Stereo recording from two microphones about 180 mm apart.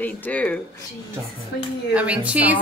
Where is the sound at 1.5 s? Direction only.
70° left (ahead or behind).